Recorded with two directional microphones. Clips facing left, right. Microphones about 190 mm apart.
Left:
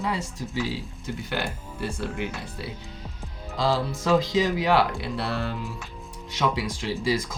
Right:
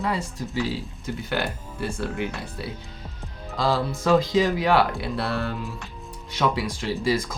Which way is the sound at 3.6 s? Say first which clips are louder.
Right 1 dB; 55° right (ahead or behind).